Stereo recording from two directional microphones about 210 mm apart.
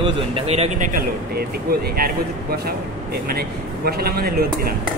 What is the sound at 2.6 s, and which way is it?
A man's voice, 45° right (ahead or behind).